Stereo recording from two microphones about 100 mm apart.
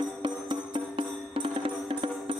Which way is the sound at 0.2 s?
55° right (ahead or behind).